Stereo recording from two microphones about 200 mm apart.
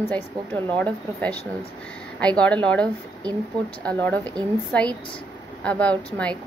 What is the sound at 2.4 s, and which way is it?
Speech, 5° left (ahead or behind).